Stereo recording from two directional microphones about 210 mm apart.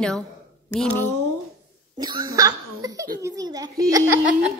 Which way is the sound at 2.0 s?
20° right (ahead or behind).